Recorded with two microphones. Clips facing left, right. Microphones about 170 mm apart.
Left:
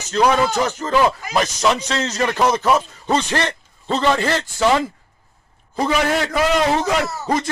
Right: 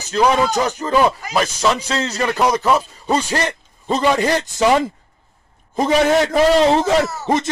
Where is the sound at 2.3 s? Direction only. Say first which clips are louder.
Right 1 dB; 10° right (ahead or behind).